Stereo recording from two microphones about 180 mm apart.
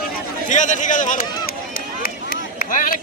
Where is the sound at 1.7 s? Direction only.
55° left (ahead or behind).